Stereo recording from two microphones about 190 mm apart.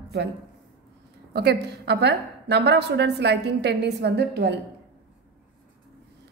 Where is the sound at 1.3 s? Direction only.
60° right (ahead or behind).